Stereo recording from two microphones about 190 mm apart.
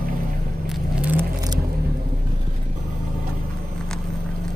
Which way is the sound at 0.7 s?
5° right (ahead or behind).